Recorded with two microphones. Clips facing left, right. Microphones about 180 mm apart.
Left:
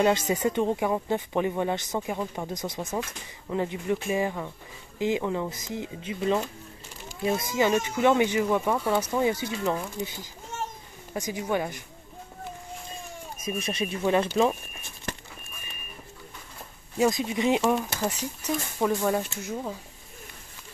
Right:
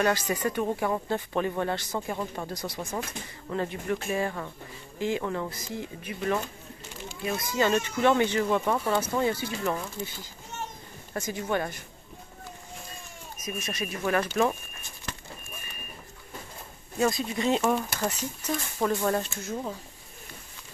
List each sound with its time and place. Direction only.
0.0 s speech: 20° left (ahead or behind)
13.4 s speech: 30° left (ahead or behind)
17.0 s speech: 15° left (ahead or behind)
17.6 s speech: centre (ahead or behind)
18.9 s speech: 10° left (ahead or behind)